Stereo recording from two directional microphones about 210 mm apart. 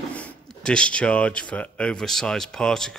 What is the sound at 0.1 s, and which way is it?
Speech, 5° left (ahead or behind).